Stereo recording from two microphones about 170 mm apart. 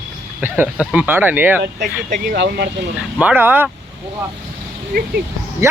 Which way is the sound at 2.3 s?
70° right (ahead or behind).